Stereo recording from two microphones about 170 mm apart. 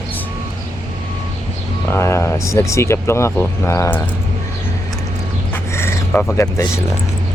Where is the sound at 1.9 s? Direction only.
15° left (ahead or behind).